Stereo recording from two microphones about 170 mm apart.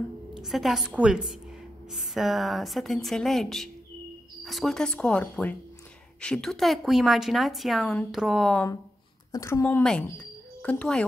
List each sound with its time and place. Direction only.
0.4 s speech: centre (ahead or behind)
9.3 s a woman's voice: 15° left (ahead or behind)